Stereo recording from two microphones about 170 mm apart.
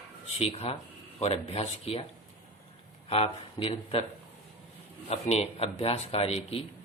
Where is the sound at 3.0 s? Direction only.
35° left (ahead or behind).